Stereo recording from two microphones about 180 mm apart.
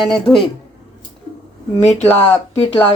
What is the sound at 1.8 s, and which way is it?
Speech, 40° left (ahead or behind).